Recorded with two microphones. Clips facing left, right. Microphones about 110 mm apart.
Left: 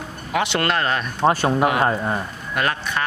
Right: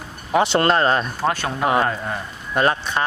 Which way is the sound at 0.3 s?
30° right (ahead or behind).